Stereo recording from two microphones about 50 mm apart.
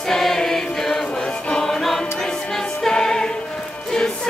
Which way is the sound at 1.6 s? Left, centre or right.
Centre.